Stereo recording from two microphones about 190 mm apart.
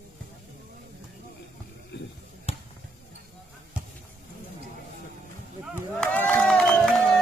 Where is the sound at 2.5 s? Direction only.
30° left (ahead or behind).